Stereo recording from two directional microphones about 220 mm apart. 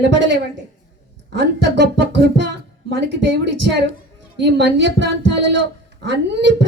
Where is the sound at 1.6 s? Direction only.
50° right (ahead or behind).